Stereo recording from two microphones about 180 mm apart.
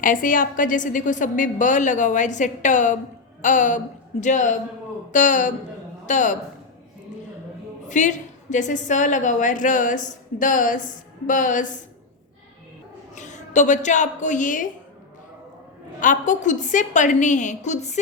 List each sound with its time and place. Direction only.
0.0 s a woman's voice: 50° left (ahead or behind)
7.9 s a woman's voice: 45° left (ahead or behind)
13.1 s a woman's voice: 40° left (ahead or behind)
16.0 s a woman's voice: 45° left (ahead or behind)